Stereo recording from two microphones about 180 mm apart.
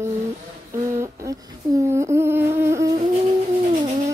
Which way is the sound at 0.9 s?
15° right (ahead or behind).